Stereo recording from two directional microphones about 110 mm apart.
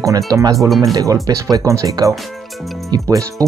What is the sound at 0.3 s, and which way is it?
Speech, 30° right (ahead or behind).